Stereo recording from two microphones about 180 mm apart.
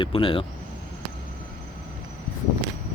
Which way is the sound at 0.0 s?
30° left (ahead or behind).